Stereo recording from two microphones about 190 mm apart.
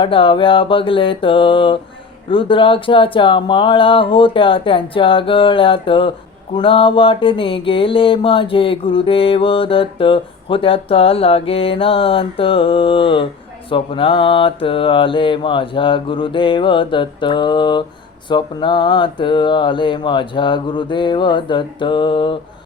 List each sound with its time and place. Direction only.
0.0 s mantra: 25° left (ahead or behind)